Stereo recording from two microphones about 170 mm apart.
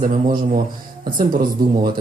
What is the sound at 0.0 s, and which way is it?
A man's voice, 50° right (ahead or behind).